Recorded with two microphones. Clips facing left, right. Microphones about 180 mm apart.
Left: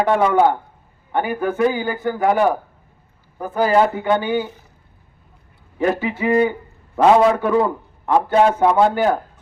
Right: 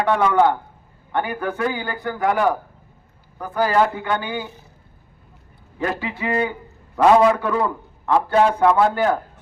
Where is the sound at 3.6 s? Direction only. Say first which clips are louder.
Left 3 dB; 20° left (ahead or behind).